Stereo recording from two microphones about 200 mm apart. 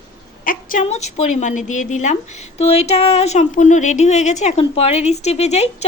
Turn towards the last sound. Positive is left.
turn(degrees=35)  # may be behind; listen again after turning